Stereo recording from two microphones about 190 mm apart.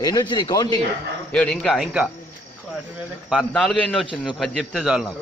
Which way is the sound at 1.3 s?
5° left (ahead or behind).